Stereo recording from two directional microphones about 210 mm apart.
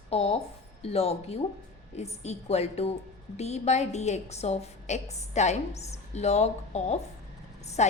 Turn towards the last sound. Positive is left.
turn(degrees=30)  # may be behind; listen again after turning